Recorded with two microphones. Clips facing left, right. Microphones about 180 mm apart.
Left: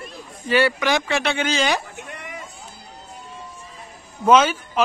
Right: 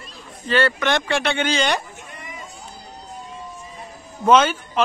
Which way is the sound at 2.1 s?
65° left (ahead or behind).